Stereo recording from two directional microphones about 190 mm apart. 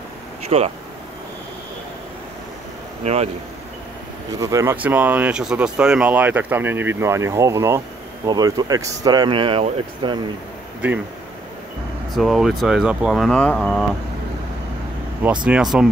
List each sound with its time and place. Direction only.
0.5 s speech: 30° right (ahead or behind)
3.0 s speech: 35° right (ahead or behind)
4.3 s speech: 20° right (ahead or behind)
10.8 s speech: 5° right (ahead or behind)
12.1 s speech: centre (ahead or behind)
15.4 s speech: 5° right (ahead or behind)